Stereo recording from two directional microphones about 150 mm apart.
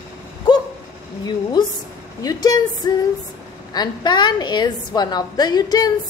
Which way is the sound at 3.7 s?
30° left (ahead or behind).